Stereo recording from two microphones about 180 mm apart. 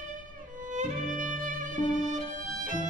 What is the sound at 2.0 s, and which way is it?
Violin, 45° right (ahead or behind).